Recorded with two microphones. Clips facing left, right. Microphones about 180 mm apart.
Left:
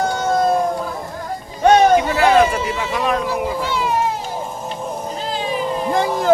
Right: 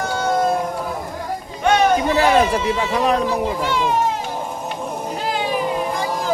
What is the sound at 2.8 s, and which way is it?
Speech, 35° right (ahead or behind).